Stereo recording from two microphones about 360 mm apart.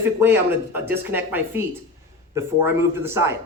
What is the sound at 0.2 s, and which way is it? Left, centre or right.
Speech, centre.